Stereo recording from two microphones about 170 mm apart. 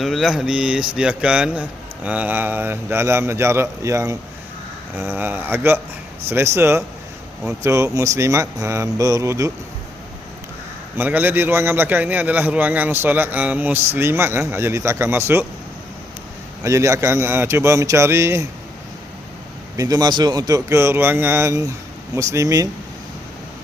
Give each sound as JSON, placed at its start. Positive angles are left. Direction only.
{"t": 0.0, "sound": "a man's voice", "side_deg": 0}
{"t": 10.9, "sound": "a man's voice", "side_deg": -10}
{"t": 16.6, "sound": "a man's voice", "side_deg": -20}
{"t": 19.7, "sound": "a man's voice", "side_deg": -20}